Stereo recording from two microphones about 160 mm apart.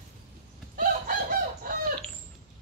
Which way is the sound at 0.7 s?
60° right (ahead or behind).